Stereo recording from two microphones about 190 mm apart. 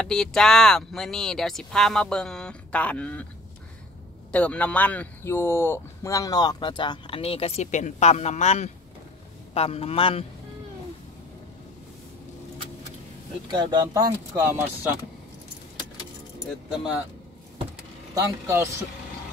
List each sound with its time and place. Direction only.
0.0 s speech: 5° left (ahead or behind)
4.3 s a man's voice: 5° left (ahead or behind); by 10.2 s 30° left (ahead or behind)
13.5 s speech: 20° right (ahead or behind)
18.1 s speech: 15° right (ahead or behind)